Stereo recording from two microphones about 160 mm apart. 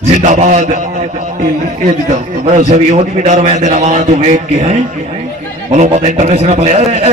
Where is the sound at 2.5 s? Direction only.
45° right (ahead or behind).